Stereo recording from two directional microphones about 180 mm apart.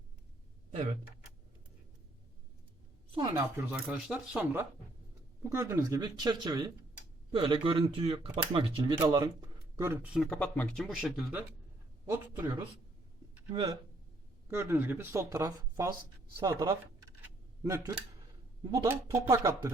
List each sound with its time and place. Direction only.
3.6 s speech: 5° right (ahead or behind)
5.4 s speech: 15° right (ahead or behind)
10.2 s speech: 5° left (ahead or behind)
12.0 s speech: 15° right (ahead or behind)
13.5 s speech: 30° right (ahead or behind)
14.4 s speech: 15° right (ahead or behind)